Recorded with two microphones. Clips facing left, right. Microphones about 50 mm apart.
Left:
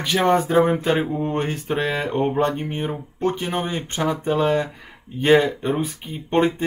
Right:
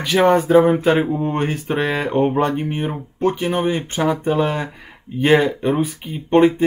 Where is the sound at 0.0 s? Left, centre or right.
Centre.